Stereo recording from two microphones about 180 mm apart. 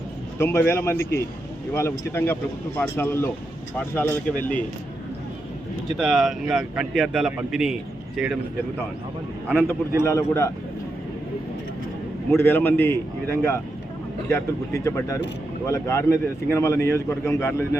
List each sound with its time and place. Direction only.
0.3 s a man's voice: 15° left (ahead or behind)
6.0 s a man's voice: centre (ahead or behind)
9.5 s a man's voice: 5° left (ahead or behind)
12.4 s a man's voice: 10° left (ahead or behind)